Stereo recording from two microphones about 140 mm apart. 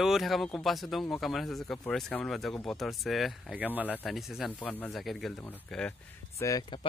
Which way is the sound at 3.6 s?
10° right (ahead or behind).